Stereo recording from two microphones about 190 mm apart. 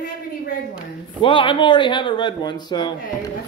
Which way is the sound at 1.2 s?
25° left (ahead or behind).